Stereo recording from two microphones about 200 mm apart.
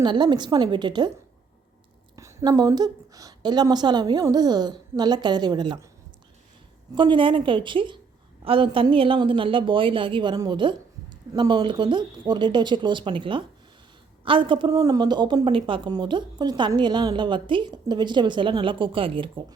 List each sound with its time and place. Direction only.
0.0 s a woman's voice: 20° right (ahead or behind)
2.1 s a woman's voice: 15° right (ahead or behind)
6.9 s a woman's voice: 25° right (ahead or behind)